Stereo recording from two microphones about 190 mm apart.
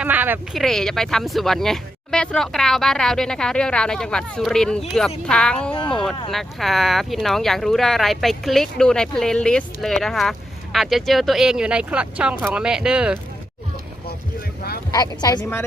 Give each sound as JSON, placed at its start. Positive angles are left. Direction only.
{"t": 0.0, "sound": "speech", "side_deg": -10}
{"t": 0.6, "sound": "speech", "side_deg": 0}
{"t": 14.9, "sound": "speech", "side_deg": 20}